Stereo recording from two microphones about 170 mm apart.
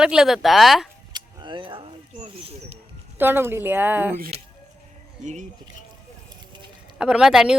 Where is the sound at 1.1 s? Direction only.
25° right (ahead or behind).